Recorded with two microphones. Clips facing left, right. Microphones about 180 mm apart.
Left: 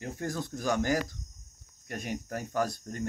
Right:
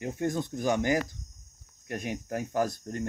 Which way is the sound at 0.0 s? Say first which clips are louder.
Right 5 dB; 20° right (ahead or behind).